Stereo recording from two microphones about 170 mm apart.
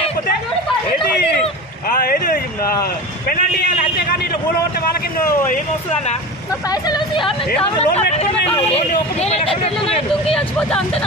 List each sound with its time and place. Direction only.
1.9 s a sound: 60° left (ahead or behind)
3.3 s a man's voice: 65° left (ahead or behind)
6.7 s speech: 25° left (ahead or behind)
7.6 s speech: 35° left (ahead or behind)
10.3 s speech: 5° left (ahead or behind)